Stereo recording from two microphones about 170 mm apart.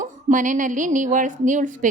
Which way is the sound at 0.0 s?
50° right (ahead or behind).